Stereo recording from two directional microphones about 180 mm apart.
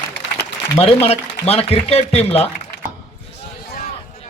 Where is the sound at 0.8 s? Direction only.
35° left (ahead or behind).